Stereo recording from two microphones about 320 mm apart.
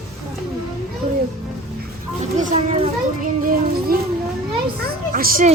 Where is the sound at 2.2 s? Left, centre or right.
Right.